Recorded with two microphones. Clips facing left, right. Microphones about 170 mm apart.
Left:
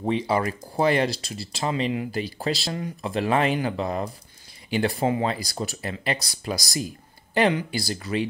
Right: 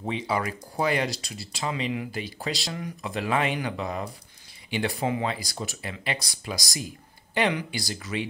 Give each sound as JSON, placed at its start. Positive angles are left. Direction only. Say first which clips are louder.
{"t": 0.0, "sound": "speech", "louder": "left 5 dB", "side_deg": 40}